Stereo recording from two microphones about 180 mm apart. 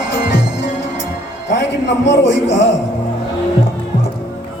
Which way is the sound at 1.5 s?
75° left (ahead or behind).